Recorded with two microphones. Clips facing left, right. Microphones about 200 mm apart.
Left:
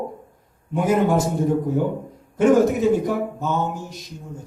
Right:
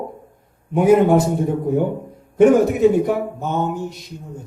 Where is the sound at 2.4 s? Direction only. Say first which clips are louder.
Right 3 dB; 60° right (ahead or behind).